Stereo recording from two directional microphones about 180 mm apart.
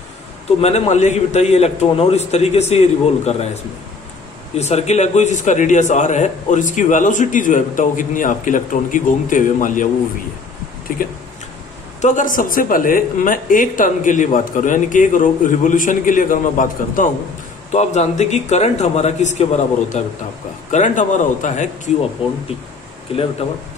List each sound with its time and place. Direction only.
0.6 s a man's voice: 40° left (ahead or behind)
4.6 s a man's voice: 40° left (ahead or behind)
10.9 s a man's voice: 50° left (ahead or behind)
23.1 s a man's voice: 30° left (ahead or behind)